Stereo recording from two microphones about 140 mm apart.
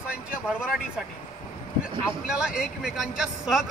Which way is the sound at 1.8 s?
5° right (ahead or behind).